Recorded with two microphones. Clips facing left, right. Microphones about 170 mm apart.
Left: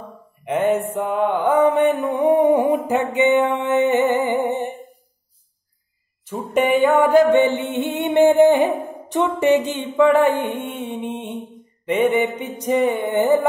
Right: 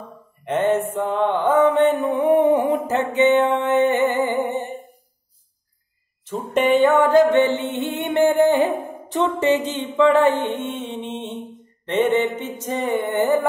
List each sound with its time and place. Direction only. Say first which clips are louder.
0.5 s mantra: even; 10° left (ahead or behind)
6.2 s mantra: even; 10° left (ahead or behind)